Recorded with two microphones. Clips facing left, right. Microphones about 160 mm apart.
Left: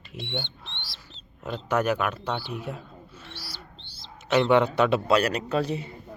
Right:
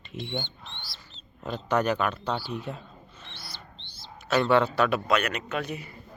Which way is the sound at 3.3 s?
5° left (ahead or behind).